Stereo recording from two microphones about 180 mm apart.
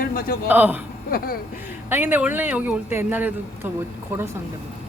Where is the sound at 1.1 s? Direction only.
55° left (ahead or behind).